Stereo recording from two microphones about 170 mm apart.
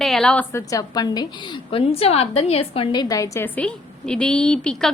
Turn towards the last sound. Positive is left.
turn(degrees=5)  # may be behind; listen again after turning